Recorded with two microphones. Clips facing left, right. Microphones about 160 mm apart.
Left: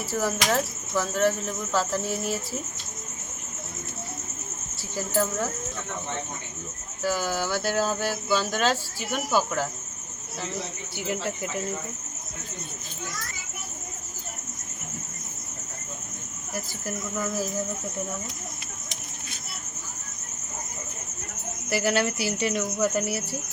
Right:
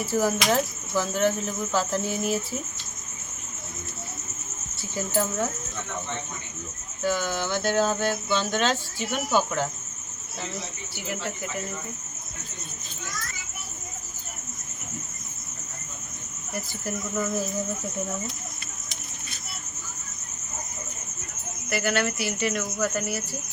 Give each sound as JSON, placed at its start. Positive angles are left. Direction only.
{"t": 0.0, "sound": "cricket", "side_deg": 0}
{"t": 4.9, "sound": "cricket", "side_deg": 0}
{"t": 7.0, "sound": "speech", "side_deg": 5}
{"t": 21.7, "sound": "speech", "side_deg": 30}